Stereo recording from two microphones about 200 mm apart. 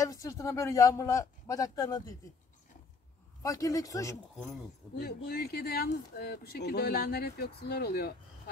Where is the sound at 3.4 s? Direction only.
15° left (ahead or behind).